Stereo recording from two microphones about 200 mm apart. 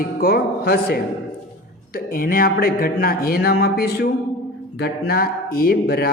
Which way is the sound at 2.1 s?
45° left (ahead or behind).